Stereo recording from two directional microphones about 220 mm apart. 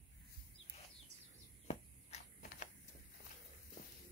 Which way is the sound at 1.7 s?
30° left (ahead or behind).